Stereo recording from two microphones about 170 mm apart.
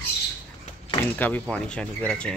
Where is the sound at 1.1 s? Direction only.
10° left (ahead or behind).